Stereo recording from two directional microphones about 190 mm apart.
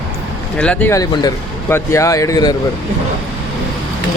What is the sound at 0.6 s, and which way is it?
Speech, 5° left (ahead or behind).